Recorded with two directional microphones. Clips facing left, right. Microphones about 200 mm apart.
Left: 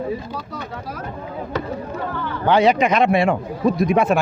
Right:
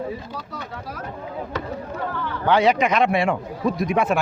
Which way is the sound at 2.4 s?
25° left (ahead or behind).